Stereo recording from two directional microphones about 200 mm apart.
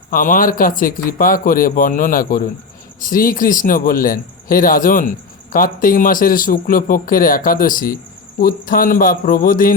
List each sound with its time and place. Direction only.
0.1 s speech: 45° left (ahead or behind)